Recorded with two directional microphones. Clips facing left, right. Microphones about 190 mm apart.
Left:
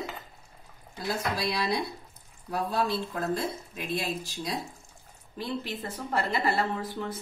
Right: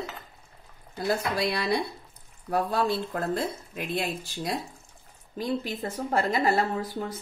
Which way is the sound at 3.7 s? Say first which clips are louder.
Right 2 dB; 55° right (ahead or behind).